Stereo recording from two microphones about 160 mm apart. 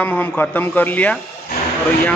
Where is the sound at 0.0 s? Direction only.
10° left (ahead or behind).